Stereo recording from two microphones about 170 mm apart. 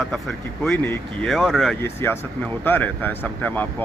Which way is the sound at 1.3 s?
Centre (ahead or behind).